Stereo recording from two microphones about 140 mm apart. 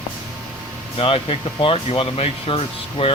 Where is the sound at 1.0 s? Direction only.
40° left (ahead or behind).